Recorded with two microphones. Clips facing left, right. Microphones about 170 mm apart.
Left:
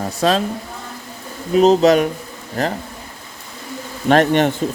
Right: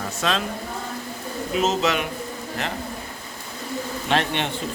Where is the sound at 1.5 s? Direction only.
40° left (ahead or behind).